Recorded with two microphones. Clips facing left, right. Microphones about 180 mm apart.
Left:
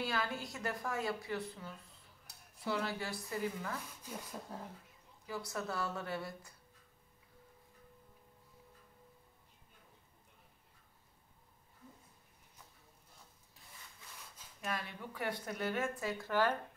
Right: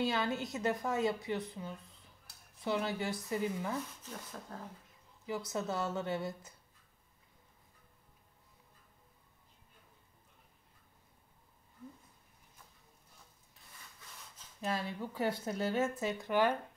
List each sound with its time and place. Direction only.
0.0 s speech: 20° right (ahead or behind)
4.0 s speech: 10° left (ahead or behind)
5.2 s speech: 20° right (ahead or behind)
14.6 s speech: 30° right (ahead or behind)